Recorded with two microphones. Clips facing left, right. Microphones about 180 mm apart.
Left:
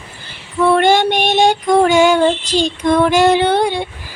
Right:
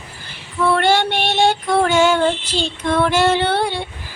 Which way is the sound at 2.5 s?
15° left (ahead or behind).